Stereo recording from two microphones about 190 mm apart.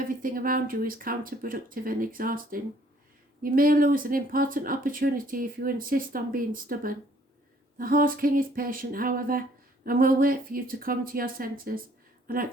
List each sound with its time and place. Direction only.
0.0 s speech: 45° right (ahead or behind)